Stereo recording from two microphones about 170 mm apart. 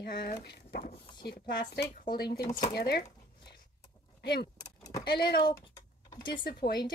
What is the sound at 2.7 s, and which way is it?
Speech, 70° left (ahead or behind).